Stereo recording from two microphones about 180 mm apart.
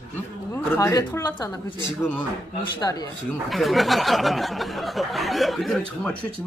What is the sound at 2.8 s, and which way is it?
Speech, 20° left (ahead or behind).